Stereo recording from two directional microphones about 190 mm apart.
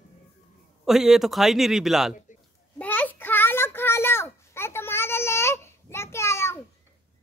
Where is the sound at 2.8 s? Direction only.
10° left (ahead or behind).